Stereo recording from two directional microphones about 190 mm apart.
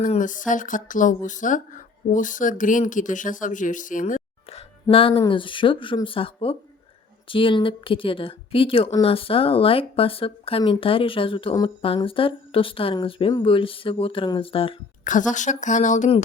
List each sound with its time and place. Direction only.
0.0 s speech: 45° left (ahead or behind)
15.0 s speech: 40° left (ahead or behind)